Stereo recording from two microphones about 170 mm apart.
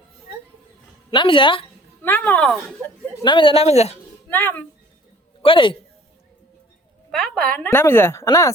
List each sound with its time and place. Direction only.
1.1 s a woman's voice: 30° left (ahead or behind)
2.0 s a woman's voice: 10° left (ahead or behind)
3.2 s speech: 30° left (ahead or behind)
4.3 s speech: 10° left (ahead or behind)
5.4 s speech: 30° left (ahead or behind)
7.1 s a woman's voice: centre (ahead or behind); by 8.5 s 15° left (ahead or behind)